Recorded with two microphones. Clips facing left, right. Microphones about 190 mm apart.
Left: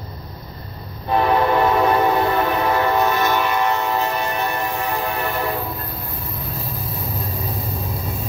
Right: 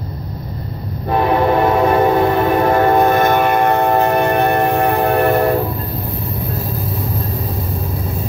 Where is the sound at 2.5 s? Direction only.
50° right (ahead or behind).